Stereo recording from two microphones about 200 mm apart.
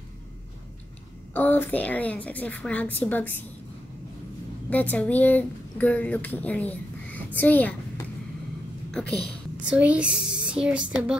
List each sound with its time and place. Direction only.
1.3 s a woman's voice: 10° left (ahead or behind)
4.6 s speech: 10° left (ahead or behind)
9.1 s a woman's voice: 5° left (ahead or behind)